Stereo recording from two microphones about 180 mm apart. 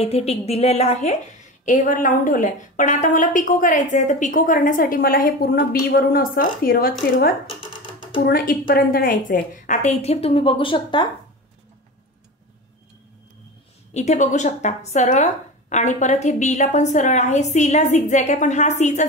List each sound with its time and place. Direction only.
0.0 s a woman's voice: 35° left (ahead or behind)
13.9 s speech: 40° left (ahead or behind)